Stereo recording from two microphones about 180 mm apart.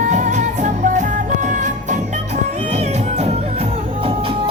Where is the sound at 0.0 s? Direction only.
40° right (ahead or behind).